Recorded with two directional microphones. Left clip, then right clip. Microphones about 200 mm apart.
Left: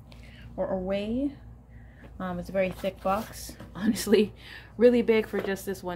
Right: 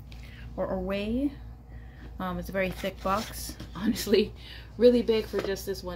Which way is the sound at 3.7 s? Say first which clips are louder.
Left 1 dB; 15° left (ahead or behind).